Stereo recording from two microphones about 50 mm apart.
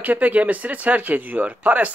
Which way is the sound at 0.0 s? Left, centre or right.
Right.